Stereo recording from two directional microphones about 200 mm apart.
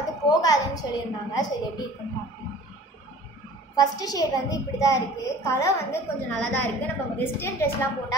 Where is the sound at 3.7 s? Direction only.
20° left (ahead or behind).